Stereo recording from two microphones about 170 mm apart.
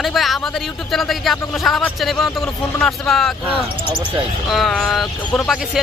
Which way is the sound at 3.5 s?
30° right (ahead or behind).